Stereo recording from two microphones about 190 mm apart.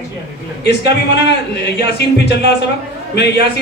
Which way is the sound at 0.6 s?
60° left (ahead or behind).